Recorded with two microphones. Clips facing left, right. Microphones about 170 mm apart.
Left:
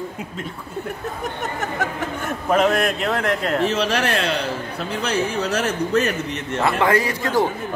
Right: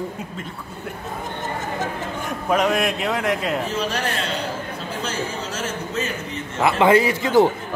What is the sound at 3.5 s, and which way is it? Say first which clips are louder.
Speech: left 4 dB; 75° left (ahead or behind).